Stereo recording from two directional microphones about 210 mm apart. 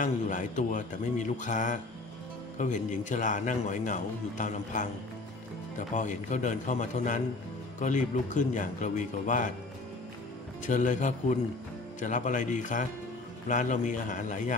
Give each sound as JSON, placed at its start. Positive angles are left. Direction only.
{"t": 0.0, "sound": "a man's voice", "side_deg": 35}
{"t": 5.9, "sound": "a man's voice", "side_deg": 35}
{"t": 10.7, "sound": "a man's voice", "side_deg": 35}